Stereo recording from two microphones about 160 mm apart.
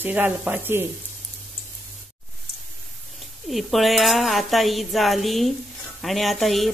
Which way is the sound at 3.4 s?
Centre (ahead or behind).